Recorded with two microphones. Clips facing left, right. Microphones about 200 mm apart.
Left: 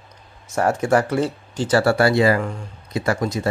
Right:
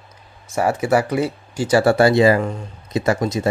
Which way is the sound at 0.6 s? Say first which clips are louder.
Even; 5° right (ahead or behind).